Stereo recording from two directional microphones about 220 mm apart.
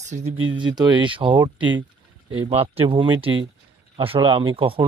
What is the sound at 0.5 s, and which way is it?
Speech, 20° right (ahead or behind).